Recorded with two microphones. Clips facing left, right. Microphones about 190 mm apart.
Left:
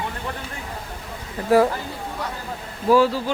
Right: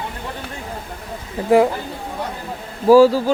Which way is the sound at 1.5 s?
20° right (ahead or behind).